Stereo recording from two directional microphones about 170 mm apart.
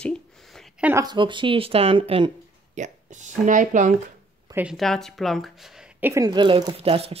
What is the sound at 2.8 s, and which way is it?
Speech, 45° right (ahead or behind).